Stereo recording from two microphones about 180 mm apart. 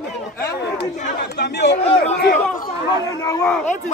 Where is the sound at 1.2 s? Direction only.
70° left (ahead or behind).